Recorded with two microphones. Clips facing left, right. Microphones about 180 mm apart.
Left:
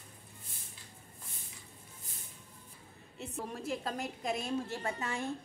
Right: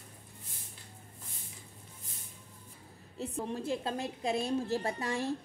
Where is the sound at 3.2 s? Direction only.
30° right (ahead or behind).